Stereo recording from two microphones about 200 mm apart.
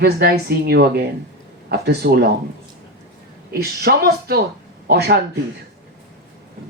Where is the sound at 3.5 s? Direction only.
50° right (ahead or behind).